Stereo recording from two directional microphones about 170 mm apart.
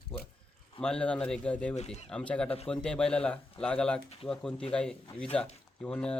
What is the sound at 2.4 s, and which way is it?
Speech, 35° left (ahead or behind).